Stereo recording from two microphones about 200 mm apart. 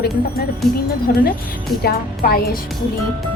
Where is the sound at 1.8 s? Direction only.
50° left (ahead or behind).